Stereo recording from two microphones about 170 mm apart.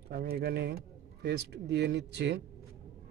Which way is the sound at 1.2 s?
85° right.